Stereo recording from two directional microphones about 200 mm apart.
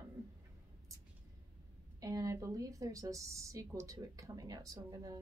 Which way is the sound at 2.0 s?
15° right (ahead or behind).